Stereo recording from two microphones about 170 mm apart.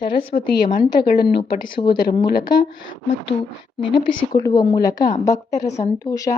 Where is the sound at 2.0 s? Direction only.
65° left (ahead or behind).